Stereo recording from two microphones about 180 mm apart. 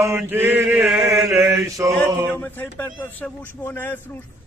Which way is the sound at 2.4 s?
10° left (ahead or behind).